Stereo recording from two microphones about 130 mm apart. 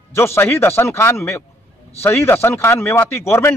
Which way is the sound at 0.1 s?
20° left (ahead or behind).